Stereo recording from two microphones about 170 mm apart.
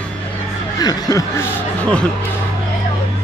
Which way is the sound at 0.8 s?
20° left (ahead or behind).